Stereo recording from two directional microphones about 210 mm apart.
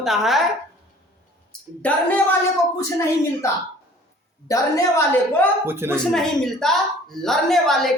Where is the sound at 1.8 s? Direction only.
5° left (ahead or behind).